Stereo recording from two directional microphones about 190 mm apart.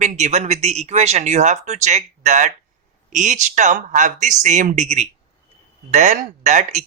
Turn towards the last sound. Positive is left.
turn(degrees=-40)  # may be behind; listen again after turning